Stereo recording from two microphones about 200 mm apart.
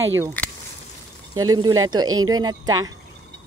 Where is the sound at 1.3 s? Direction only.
20° right (ahead or behind).